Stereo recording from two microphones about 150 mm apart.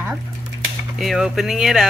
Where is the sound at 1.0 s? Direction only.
Centre (ahead or behind).